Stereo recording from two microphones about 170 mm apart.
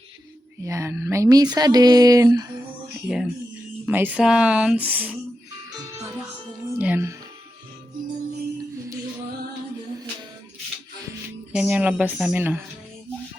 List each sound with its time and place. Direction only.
0.6 s speech: 15° right (ahead or behind)
3.8 s speech: 10° right (ahead or behind)
6.7 s music: 10° right (ahead or behind)
11.5 s speech: 5° right (ahead or behind)